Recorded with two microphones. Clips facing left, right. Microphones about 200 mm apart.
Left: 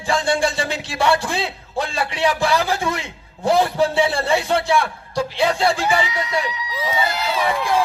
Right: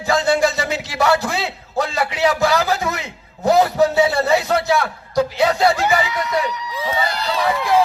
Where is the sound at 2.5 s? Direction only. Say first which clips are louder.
Right 1 dB; 30° left (ahead or behind).